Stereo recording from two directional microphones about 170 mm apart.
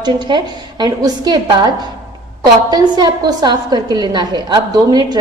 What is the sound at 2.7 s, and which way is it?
A woman's voice, 25° right (ahead or behind).